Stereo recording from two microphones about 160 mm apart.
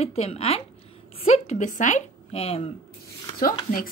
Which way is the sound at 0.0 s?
40° left (ahead or behind).